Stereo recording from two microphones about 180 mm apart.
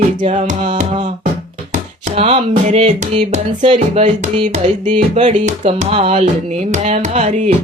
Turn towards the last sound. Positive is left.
turn(degrees=-40)  # may be behind; listen again after turning